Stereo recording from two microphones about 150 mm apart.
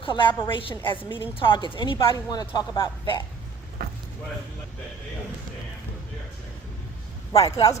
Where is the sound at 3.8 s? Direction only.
90° right.